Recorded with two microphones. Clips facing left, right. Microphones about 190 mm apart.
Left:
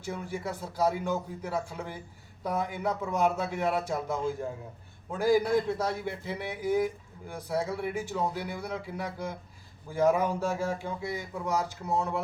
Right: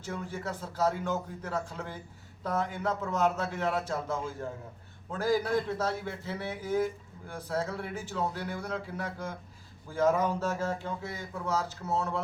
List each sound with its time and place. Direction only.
0.0 s a man's voice: 10° left (ahead or behind)